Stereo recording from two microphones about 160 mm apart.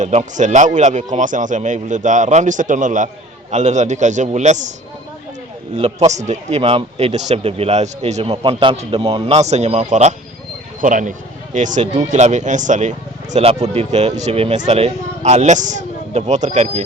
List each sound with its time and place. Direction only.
0.0 s speech: 45° right (ahead or behind)
5.7 s speech: 40° right (ahead or behind)